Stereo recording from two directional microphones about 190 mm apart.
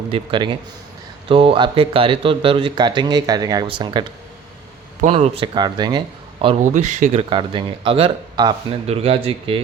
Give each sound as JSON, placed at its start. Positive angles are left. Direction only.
{"t": 0.1, "sound": "speech", "side_deg": -25}
{"t": 4.9, "sound": "speech", "side_deg": -35}
{"t": 5.4, "sound": "speech", "side_deg": -25}
{"t": 6.4, "sound": "speech", "side_deg": -35}